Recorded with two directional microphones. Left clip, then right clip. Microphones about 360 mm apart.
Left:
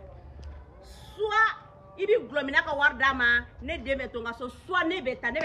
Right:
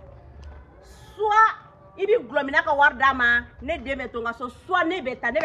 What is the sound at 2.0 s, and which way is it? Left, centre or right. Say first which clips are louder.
A woman's voice: right 4 dB; centre.